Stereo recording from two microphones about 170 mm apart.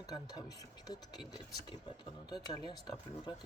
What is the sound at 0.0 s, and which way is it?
Speech, 20° left (ahead or behind).